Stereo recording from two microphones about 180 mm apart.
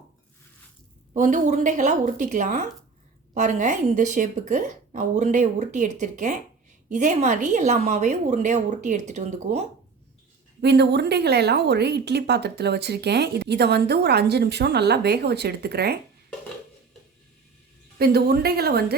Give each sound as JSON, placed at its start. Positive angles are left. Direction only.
{"t": 1.1, "sound": "a woman's voice", "side_deg": -45}
{"t": 10.6, "sound": "speech", "side_deg": -70}
{"t": 17.9, "sound": "a woman's voice", "side_deg": -60}